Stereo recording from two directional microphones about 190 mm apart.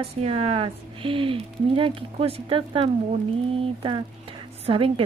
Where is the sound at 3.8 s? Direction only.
30° right (ahead or behind).